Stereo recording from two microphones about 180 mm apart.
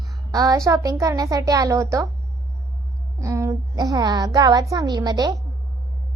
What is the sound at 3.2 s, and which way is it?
A woman's voice, 15° right (ahead or behind).